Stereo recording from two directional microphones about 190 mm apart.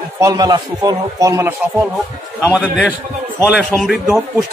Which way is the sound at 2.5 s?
5° left (ahead or behind).